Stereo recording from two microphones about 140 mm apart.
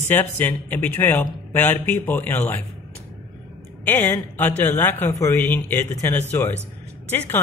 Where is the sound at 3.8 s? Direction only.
15° left (ahead or behind).